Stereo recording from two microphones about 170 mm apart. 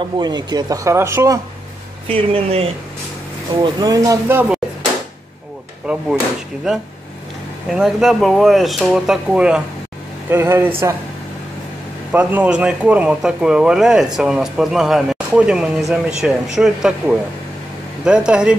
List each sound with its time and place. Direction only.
0.0 s speech: 25° right (ahead or behind)
2.0 s speech: 35° right (ahead or behind)
3.6 s speech: 20° right (ahead or behind)
5.9 s slam: 5° right (ahead or behind)
7.7 s speech: centre (ahead or behind)
10.3 s speech: 15° right (ahead or behind)
12.1 s speech: 10° right (ahead or behind)